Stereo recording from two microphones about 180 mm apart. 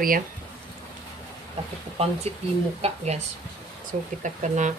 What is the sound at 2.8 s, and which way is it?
Speech, 35° right (ahead or behind).